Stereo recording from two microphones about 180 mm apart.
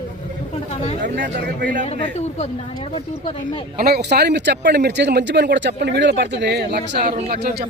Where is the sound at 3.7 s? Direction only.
60° right (ahead or behind).